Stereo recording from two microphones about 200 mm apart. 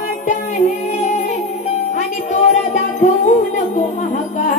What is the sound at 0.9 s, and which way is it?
Music, 35° left (ahead or behind).